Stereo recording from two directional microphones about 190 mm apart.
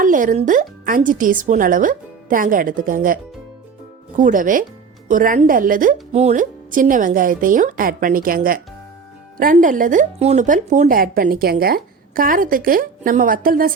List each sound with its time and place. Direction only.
0.0 s speech: 45° right (ahead or behind)
4.2 s speech: 45° right (ahead or behind)